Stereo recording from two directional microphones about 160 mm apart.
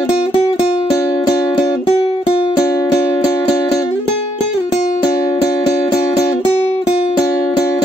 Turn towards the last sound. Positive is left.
turn(degrees=25)  # may be behind; listen again after turning